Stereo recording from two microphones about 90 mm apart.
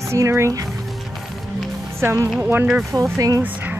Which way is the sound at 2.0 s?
30° right (ahead or behind).